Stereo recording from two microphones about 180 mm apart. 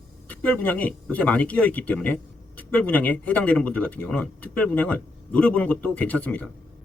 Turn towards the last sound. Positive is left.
turn(degrees=10)  # may be behind; listen again after turning